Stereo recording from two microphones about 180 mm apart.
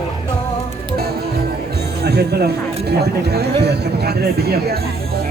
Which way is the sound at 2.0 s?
65° right (ahead or behind).